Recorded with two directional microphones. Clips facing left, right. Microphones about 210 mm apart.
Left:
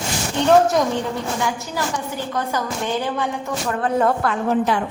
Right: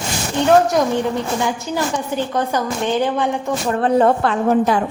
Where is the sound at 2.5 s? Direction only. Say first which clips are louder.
Right 4 dB; 20° right (ahead or behind).